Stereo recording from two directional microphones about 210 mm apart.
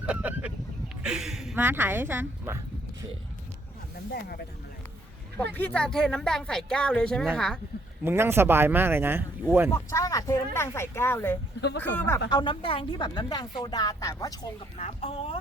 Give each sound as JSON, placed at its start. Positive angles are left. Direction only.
{"t": 0.0, "sound": "a sound", "side_deg": -5}
{"t": 1.0, "sound": "a woman's voice", "side_deg": 0}
{"t": 4.1, "sound": "speech", "side_deg": 45}
{"t": 5.4, "sound": "speech", "side_deg": 10}
{"t": 8.0, "sound": "speech", "side_deg": -10}
{"t": 9.7, "sound": "speech", "side_deg": 15}
{"t": 12.3, "sound": "speech", "side_deg": 20}
{"t": 14.8, "sound": "speech", "side_deg": 30}